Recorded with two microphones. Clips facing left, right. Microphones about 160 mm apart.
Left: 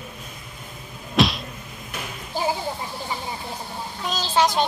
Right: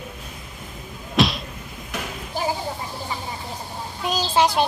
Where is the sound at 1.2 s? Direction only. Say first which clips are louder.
Even; centre (ahead or behind).